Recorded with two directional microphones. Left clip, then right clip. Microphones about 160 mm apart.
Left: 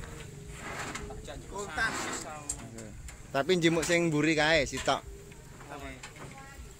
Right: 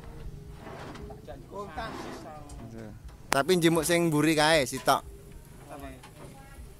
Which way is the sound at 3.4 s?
25° right (ahead or behind).